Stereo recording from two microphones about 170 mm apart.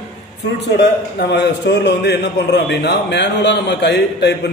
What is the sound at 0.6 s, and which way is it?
A man's voice, 90° left.